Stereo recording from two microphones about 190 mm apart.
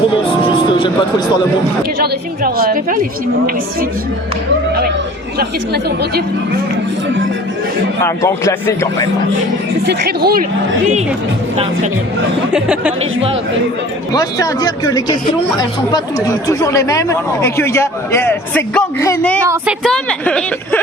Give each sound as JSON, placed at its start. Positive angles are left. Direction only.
{"t": 0.1, "sound": "music", "side_deg": 25}
{"t": 2.0, "sound": "a woman's voice", "side_deg": -50}
{"t": 5.4, "sound": "speech", "side_deg": -55}
{"t": 8.0, "sound": "speech", "side_deg": 15}
{"t": 9.8, "sound": "speech", "side_deg": -55}
{"t": 12.5, "sound": "speech", "side_deg": -5}
{"t": 14.1, "sound": "speech", "side_deg": 20}